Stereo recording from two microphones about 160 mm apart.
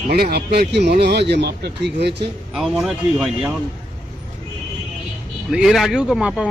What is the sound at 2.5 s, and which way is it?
Speech, 5° right (ahead or behind).